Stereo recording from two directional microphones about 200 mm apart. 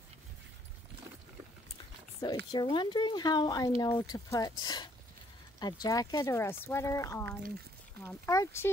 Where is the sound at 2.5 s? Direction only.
20° left (ahead or behind).